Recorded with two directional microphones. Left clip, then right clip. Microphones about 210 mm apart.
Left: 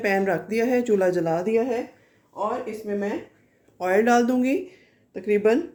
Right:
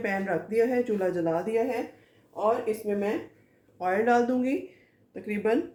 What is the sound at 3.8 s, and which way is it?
Speech, 55° left (ahead or behind).